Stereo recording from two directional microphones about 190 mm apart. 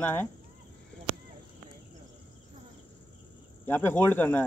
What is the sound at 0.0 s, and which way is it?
Speech, 10° left (ahead or behind).